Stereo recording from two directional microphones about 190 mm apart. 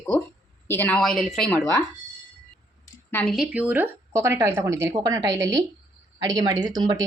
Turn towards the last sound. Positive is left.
turn(degrees=-20)  # may be behind; listen again after turning